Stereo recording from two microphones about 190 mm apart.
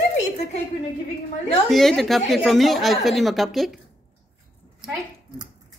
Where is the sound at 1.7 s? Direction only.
Centre (ahead or behind).